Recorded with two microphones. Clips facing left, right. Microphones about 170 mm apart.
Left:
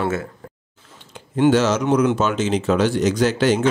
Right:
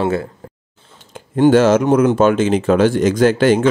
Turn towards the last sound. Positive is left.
turn(degrees=-50)  # may be behind; listen again after turning